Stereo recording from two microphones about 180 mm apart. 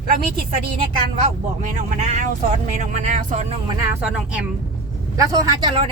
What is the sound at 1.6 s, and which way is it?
Speech, 40° right (ahead or behind).